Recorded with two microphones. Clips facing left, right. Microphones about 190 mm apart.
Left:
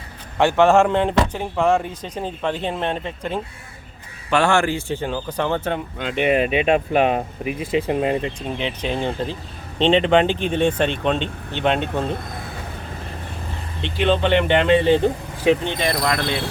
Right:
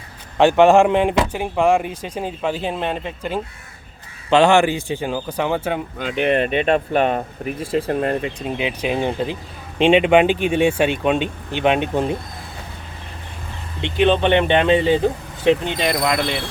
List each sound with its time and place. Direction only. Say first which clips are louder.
0.3 s speech: right 3 dB; 15° right (ahead or behind)
4.3 s speech: right 4 dB; 20° right (ahead or behind); by 8.2 s 5° left (ahead or behind)
8.2 s speech: right 2 dB; 10° right (ahead or behind)
13.8 s speech: right 3 dB; 15° right (ahead or behind)
14.9 s speech: even; centre (ahead or behind)
15.6 s speech: right 1 dB; 15° right (ahead or behind)